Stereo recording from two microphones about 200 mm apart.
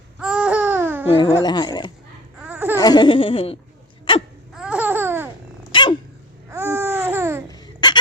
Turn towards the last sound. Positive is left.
turn(degrees=20)  # may be behind; listen again after turning